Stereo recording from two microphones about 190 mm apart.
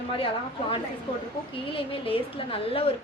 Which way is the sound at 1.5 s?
30° left (ahead or behind).